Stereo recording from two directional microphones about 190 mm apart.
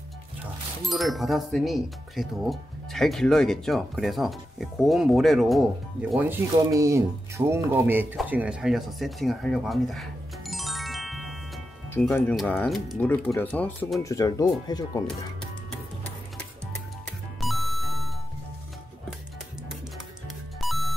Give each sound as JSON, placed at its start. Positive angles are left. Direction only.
{"t": 0.8, "sound": "speech", "side_deg": 0}
{"t": 8.2, "sound": "a sound", "side_deg": -5}
{"t": 12.0, "sound": "speech", "side_deg": 5}
{"t": 14.0, "sound": "speech", "side_deg": 20}
{"t": 17.4, "sound": "music", "side_deg": 0}
{"t": 20.6, "sound": "music", "side_deg": 0}